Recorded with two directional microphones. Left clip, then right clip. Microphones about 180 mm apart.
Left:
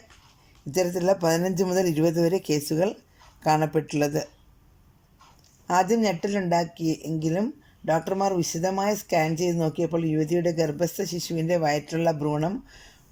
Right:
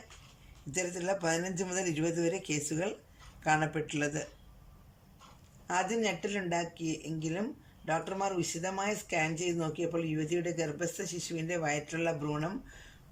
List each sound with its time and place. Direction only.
0.7 s speech: 30° left (ahead or behind)
5.6 s speech: 30° left (ahead or behind)